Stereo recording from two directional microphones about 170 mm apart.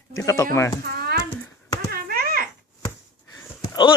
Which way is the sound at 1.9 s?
60° right (ahead or behind).